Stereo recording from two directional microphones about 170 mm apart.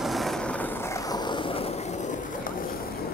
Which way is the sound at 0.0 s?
Centre (ahead or behind).